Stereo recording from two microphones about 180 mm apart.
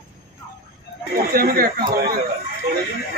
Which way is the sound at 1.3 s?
55° right (ahead or behind).